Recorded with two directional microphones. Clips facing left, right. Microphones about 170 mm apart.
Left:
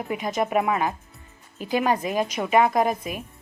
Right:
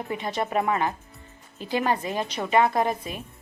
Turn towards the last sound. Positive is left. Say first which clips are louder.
# left 2 dB
turn(degrees=15)  # may be behind; listen again after turning